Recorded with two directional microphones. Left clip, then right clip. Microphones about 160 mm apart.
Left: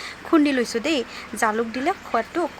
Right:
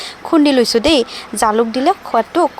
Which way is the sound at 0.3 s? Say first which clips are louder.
Right 8 dB; 25° right (ahead or behind).